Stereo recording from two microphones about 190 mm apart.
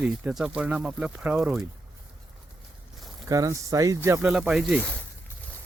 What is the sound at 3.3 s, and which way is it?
Speech, 15° right (ahead or behind).